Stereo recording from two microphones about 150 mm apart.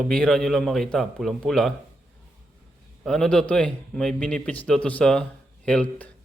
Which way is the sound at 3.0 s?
5° left (ahead or behind).